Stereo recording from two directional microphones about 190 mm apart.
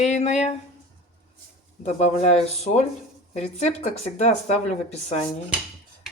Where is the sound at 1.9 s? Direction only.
35° left (ahead or behind).